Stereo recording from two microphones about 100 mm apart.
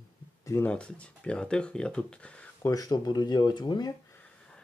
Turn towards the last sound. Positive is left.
turn(degrees=45)  # may be behind; listen again after turning